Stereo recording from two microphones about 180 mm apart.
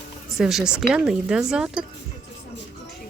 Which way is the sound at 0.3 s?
Centre (ahead or behind).